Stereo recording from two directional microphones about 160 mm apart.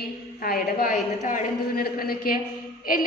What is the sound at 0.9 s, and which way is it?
Speech, 50° left (ahead or behind).